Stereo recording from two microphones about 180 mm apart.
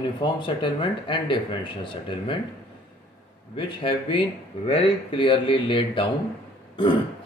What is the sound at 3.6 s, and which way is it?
Speech, 30° left (ahead or behind).